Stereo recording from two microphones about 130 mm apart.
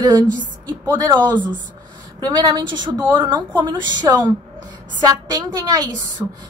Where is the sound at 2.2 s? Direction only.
30° right (ahead or behind).